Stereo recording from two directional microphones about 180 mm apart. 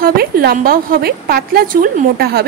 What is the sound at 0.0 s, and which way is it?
A woman's voice, 55° right (ahead or behind).